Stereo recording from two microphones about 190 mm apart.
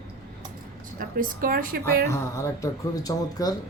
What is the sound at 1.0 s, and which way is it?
A woman's voice, 45° right (ahead or behind).